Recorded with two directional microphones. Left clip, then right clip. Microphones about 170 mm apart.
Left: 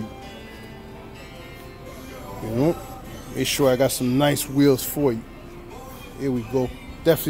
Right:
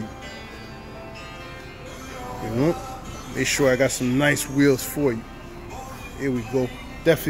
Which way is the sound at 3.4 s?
10° left (ahead or behind).